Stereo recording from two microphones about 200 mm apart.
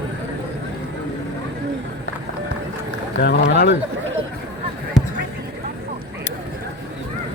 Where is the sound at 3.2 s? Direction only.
55° left (ahead or behind).